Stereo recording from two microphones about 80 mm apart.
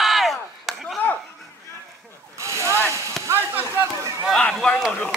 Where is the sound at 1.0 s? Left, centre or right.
Left.